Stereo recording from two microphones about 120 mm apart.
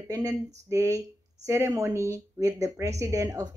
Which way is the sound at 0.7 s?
25° right (ahead or behind).